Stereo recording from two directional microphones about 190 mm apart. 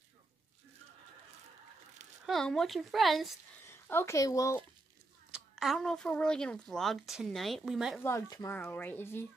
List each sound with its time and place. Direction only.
2.2 s a woman's voice: centre (ahead or behind)
3.6 s speech: 15° left (ahead or behind)
5.3 s a woman's voice: centre (ahead or behind)
8.0 s speech: 15° left (ahead or behind)